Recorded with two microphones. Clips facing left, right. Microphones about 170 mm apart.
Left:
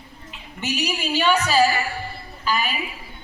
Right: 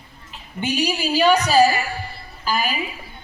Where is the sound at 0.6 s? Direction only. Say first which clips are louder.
Right 3 dB; 30° right (ahead or behind).